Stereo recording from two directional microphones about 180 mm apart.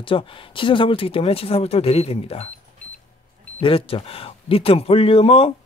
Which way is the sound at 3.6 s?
30° left (ahead or behind).